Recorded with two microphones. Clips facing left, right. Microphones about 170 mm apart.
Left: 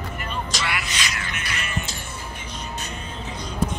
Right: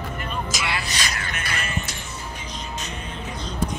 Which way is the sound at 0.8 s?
40° right (ahead or behind).